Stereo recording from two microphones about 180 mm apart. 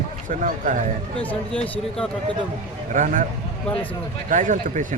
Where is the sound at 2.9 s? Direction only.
45° right (ahead or behind).